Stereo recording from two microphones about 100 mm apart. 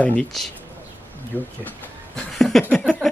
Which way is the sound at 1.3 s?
15° right (ahead or behind).